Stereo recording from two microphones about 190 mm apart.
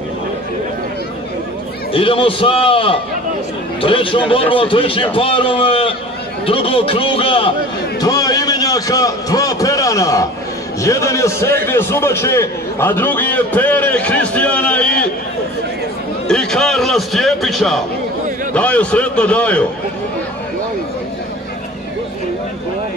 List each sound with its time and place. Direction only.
1.9 s a man's voice: 30° left (ahead or behind)
8.0 s a sound: 20° left (ahead or behind)
10.8 s a man's voice: 15° left (ahead or behind)
16.3 s a man's voice: 5° left (ahead or behind)